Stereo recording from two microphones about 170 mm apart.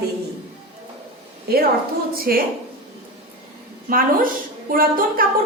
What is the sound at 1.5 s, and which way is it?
Speech, 65° right (ahead or behind).